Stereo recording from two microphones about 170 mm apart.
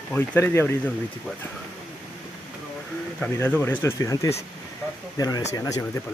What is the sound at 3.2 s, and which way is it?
Speech, 10° left (ahead or behind).